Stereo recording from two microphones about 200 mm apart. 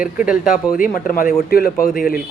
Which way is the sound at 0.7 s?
45° left (ahead or behind).